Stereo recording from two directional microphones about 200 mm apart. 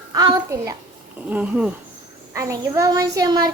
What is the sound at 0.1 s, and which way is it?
Speech, 20° right (ahead or behind).